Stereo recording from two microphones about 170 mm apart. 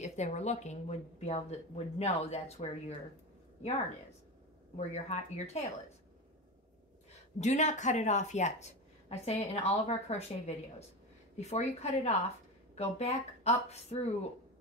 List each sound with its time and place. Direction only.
0.0 s speech: 45° left (ahead or behind)
4.7 s speech: 40° left (ahead or behind)
7.3 s speech: 45° left (ahead or behind)